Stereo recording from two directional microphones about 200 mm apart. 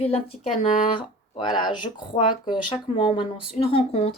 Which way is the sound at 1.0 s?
25° left (ahead or behind).